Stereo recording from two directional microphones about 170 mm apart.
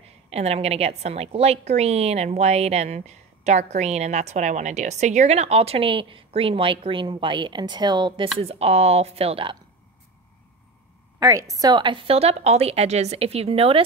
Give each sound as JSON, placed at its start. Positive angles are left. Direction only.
{"t": 0.3, "sound": "a woman's voice", "side_deg": -40}
{"t": 8.4, "sound": "a woman's voice", "side_deg": -35}
{"t": 11.1, "sound": "a woman's voice", "side_deg": -20}